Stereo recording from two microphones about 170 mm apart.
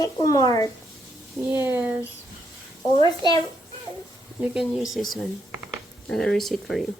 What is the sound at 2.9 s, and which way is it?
Speech, 25° left (ahead or behind).